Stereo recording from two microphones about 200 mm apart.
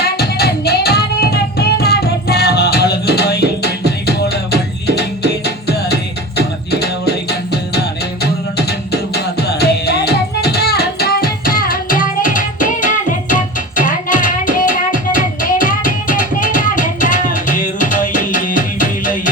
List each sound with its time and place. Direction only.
0.0 s music: 55° left (ahead or behind)